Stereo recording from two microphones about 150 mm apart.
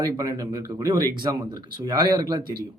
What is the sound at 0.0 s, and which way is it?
Speech, 25° right (ahead or behind).